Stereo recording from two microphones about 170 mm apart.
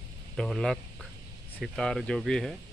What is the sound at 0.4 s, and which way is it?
Speech, centre (ahead or behind).